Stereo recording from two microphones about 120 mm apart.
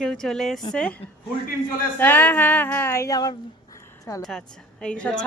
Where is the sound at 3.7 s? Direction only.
25° left (ahead or behind).